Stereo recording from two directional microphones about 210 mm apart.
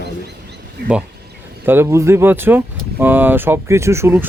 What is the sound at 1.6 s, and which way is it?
Speech, 10° right (ahead or behind).